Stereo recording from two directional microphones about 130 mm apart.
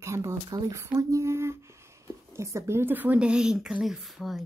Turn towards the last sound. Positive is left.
turn(degrees=0)  # may be behind; listen again after turning